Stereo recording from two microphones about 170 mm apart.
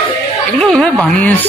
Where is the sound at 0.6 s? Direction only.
5° left (ahead or behind).